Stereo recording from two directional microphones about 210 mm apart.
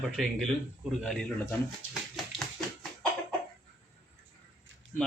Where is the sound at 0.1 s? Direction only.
Centre (ahead or behind).